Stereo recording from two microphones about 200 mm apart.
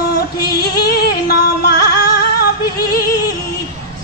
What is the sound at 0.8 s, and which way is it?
Music, 55° left (ahead or behind).